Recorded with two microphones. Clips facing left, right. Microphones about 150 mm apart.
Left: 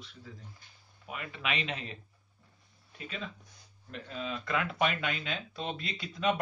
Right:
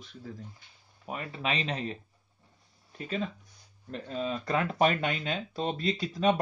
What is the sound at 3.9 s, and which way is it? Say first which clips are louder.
Speech: right 5 dB; 35° right (ahead or behind).